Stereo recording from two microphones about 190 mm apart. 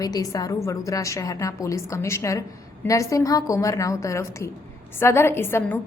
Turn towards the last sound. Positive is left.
turn(degrees=10)  # may be behind; listen again after turning